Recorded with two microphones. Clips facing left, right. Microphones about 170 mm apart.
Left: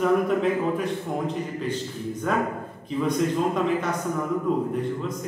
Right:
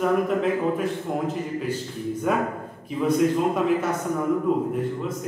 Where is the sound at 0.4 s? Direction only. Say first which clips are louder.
Right 1 dB; 5° right (ahead or behind).